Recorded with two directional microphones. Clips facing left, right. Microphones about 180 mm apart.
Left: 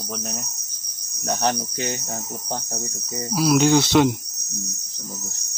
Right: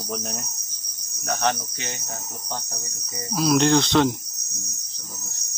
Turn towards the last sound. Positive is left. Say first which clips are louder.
# left 2 dB
turn(degrees=10)  # may be behind; listen again after turning